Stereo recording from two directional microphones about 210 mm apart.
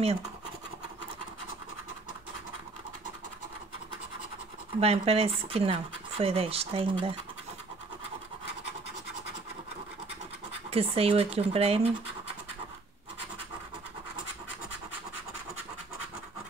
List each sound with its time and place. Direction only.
4.7 s speech: 30° right (ahead or behind)
10.7 s speech: 30° right (ahead or behind)